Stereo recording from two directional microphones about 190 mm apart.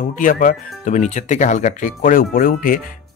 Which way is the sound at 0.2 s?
45° left (ahead or behind).